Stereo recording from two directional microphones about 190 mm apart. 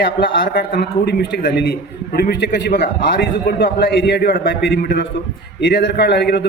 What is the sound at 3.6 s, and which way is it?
A man's voice, 55° left (ahead or behind).